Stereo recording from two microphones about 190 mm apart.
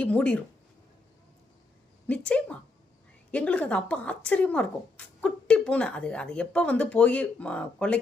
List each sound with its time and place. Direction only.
0.0 s speech: 5° left (ahead or behind)
2.0 s speech: 5° left (ahead or behind)